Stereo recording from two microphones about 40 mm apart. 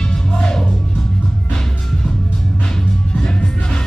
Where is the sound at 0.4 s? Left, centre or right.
Centre.